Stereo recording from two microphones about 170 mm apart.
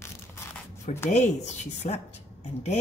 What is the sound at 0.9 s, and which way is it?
A woman's voice, 40° left (ahead or behind).